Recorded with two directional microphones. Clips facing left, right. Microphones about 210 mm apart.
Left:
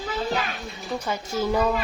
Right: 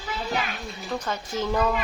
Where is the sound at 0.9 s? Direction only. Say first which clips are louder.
Left 2 dB; 10° left (ahead or behind).